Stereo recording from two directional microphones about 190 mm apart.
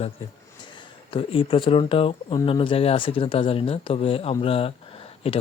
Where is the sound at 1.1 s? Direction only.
30° left (ahead or behind).